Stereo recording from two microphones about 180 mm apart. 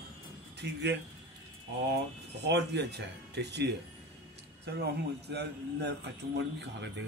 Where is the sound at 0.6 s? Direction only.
70° right (ahead or behind).